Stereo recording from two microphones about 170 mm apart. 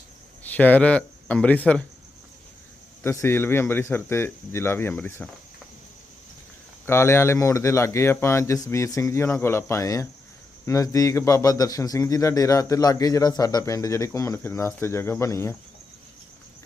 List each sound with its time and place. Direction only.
0.4 s speech: 10° left (ahead or behind)
3.0 s speech: 15° left (ahead or behind)
6.8 s a man's voice: 15° left (ahead or behind)